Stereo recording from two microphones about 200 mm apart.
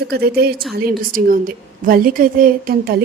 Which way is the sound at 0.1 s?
50° right (ahead or behind).